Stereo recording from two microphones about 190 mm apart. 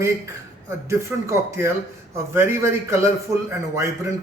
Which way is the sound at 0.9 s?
15° right (ahead or behind).